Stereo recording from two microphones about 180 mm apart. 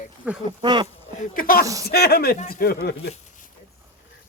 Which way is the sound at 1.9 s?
60° left (ahead or behind).